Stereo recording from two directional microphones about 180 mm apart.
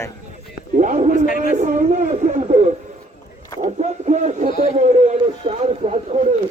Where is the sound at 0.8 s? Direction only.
45° right (ahead or behind).